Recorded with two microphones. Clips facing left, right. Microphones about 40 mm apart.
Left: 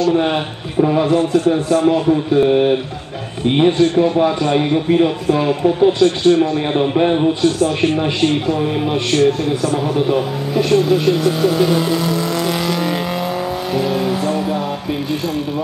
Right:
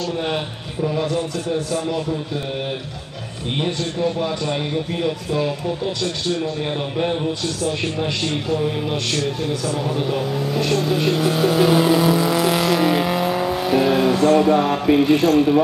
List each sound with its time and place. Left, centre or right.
0.7 s speech: left
6.0 s a man's voice: left
6.8 s a man's voice: left
9.9 s speech: centre
13.7 s vehicle: centre